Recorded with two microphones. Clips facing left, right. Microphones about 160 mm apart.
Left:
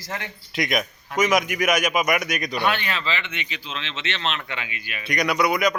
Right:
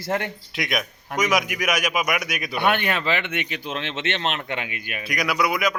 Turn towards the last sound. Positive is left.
turn(degrees=0)  # may be behind; listen again after turning